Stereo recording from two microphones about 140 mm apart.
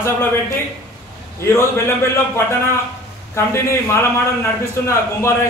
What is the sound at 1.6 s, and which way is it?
A man's voice, 20° left (ahead or behind).